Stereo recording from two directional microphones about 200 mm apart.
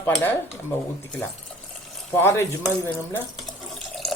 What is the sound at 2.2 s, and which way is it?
Speech, 10° left (ahead or behind).